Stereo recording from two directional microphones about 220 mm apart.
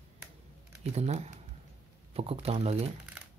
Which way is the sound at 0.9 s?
30° right (ahead or behind).